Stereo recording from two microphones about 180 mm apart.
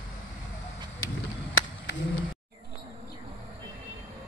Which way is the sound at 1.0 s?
90° left.